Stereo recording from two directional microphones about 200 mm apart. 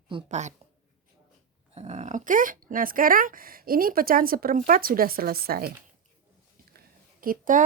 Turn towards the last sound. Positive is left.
turn(degrees=-45)  # may be behind; listen again after turning